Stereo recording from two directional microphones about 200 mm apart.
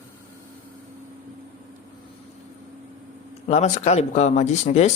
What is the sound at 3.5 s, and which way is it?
Speech, 35° left (ahead or behind).